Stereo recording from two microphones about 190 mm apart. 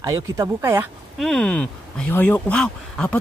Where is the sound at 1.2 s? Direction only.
5° left (ahead or behind).